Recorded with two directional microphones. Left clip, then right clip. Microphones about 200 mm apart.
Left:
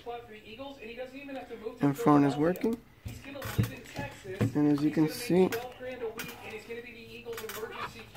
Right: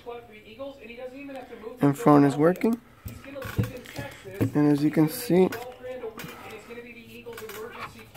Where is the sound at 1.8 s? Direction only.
25° right (ahead or behind).